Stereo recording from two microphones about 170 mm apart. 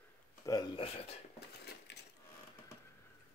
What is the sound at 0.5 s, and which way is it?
Speech, 25° left (ahead or behind).